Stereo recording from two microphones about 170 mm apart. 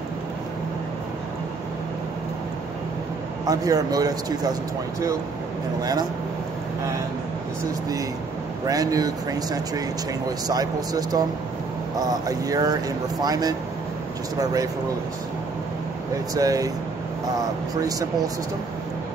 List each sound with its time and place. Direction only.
3.4 s speech: 20° right (ahead or behind)
5.8 s speech: 20° right (ahead or behind)
8.6 s speech: 20° right (ahead or behind)
16.3 s speech: 20° right (ahead or behind)
17.8 s speech: 20° right (ahead or behind)